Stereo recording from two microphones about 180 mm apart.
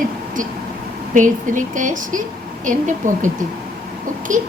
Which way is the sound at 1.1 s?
45° right (ahead or behind).